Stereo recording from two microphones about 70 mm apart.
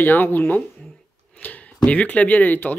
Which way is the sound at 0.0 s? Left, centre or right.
Left.